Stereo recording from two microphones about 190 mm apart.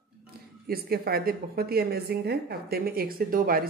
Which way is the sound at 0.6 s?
55° right (ahead or behind).